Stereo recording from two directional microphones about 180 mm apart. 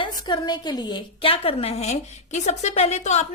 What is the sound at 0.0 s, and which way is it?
A woman's voice, 25° left (ahead or behind).